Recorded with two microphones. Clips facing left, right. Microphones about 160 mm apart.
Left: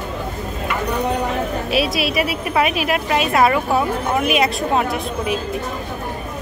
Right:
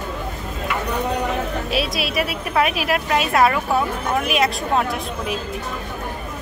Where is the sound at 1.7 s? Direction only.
Centre (ahead or behind).